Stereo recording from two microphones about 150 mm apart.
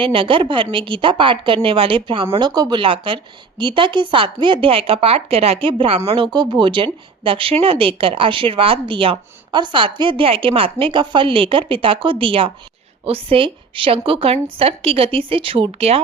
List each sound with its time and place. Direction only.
0.0 s speech: 35° right (ahead or behind)